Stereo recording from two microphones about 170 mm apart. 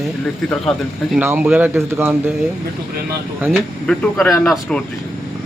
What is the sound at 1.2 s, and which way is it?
Speech, 15° right (ahead or behind).